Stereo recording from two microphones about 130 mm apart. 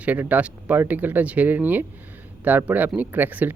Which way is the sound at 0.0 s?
10° right (ahead or behind).